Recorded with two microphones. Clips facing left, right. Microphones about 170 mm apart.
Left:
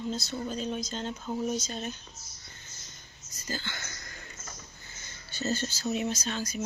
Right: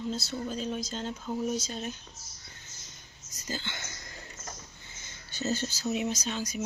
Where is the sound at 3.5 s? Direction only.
20° right (ahead or behind).